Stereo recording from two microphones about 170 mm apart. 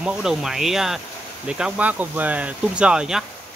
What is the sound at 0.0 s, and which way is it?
Speech, 5° right (ahead or behind).